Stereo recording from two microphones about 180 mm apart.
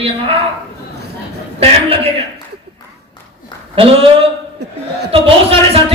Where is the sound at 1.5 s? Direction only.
35° right (ahead or behind).